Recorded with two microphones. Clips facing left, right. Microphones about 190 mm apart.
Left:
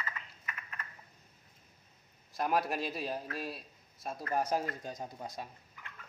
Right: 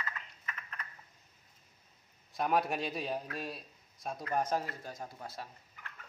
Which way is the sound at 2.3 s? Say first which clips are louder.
Right 1 dB; centre (ahead or behind).